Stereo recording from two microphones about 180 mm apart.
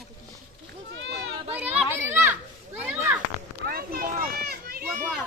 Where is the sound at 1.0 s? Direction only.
85° right.